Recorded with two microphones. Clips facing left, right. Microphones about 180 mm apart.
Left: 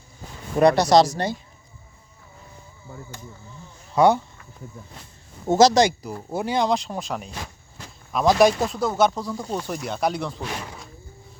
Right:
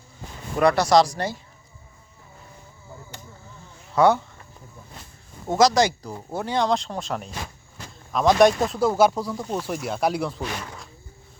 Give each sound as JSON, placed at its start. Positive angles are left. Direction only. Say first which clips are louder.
{"t": 0.6, "sound": "speech", "louder": "left 2 dB", "side_deg": 20}
{"t": 3.9, "sound": "speech", "louder": "left 1 dB", "side_deg": 15}
{"t": 5.5, "sound": "speech", "louder": "left 2 dB", "side_deg": 25}
{"t": 6.3, "sound": "speech", "louder": "left 1 dB", "side_deg": 10}